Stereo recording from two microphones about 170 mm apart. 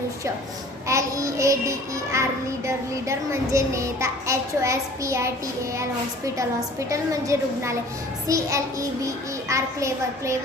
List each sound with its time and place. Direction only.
0.9 s a child's voice: 20° right (ahead or behind)